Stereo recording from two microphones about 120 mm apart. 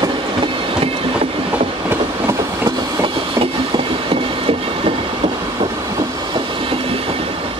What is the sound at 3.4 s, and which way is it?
Train, 50° right (ahead or behind).